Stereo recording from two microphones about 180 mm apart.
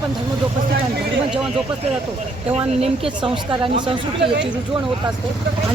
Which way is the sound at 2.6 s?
30° right (ahead or behind).